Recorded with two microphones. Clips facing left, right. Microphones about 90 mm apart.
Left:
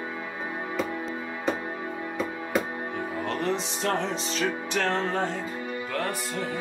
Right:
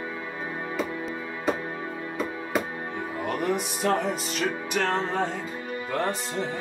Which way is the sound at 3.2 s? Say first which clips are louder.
Right 3 dB; 15° right (ahead or behind).